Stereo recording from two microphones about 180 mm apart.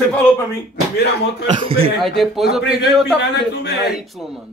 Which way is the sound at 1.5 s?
30° right (ahead or behind).